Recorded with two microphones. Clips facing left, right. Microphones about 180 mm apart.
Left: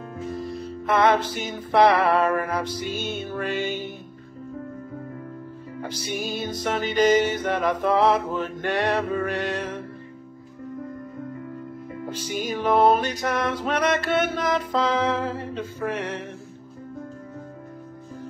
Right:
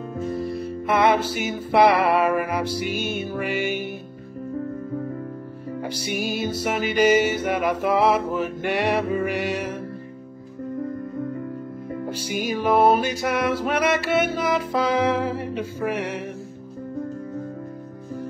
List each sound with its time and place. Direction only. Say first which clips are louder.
0.3 s music: right 3 dB; 55° right (ahead or behind)
0.8 s music: even; 10° right (ahead or behind)
5.8 s music: right 2 dB; 15° right (ahead or behind)
12.1 s music: right 1 dB; 10° right (ahead or behind)